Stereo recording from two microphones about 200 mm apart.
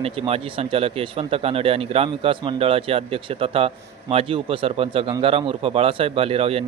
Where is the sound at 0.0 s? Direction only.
30° right (ahead or behind).